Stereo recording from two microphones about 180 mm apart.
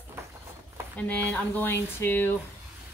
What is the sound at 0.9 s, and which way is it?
Speech, 10° left (ahead or behind).